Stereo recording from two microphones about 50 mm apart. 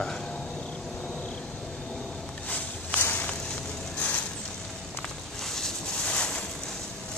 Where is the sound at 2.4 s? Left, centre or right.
Left.